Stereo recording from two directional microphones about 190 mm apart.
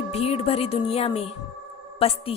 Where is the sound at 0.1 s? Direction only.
30° left (ahead or behind).